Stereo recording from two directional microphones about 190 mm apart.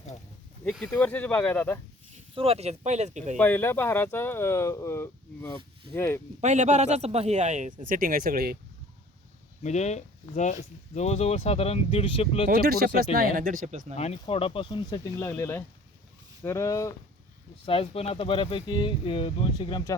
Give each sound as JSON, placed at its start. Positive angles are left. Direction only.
{"t": 0.6, "sound": "speech", "side_deg": 0}
{"t": 2.3, "sound": "a man's voice", "side_deg": -30}
{"t": 3.3, "sound": "speech", "side_deg": 10}
{"t": 6.4, "sound": "a man's voice", "side_deg": -40}
{"t": 9.6, "sound": "speech", "side_deg": 35}
{"t": 12.5, "sound": "speech", "side_deg": -50}
{"t": 13.9, "sound": "speech", "side_deg": 35}
{"t": 17.7, "sound": "speech", "side_deg": 30}